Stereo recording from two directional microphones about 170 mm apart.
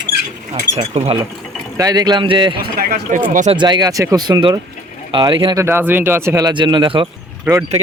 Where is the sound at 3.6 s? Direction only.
25° right (ahead or behind).